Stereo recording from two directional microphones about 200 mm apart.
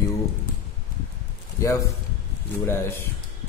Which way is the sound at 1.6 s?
15° left (ahead or behind).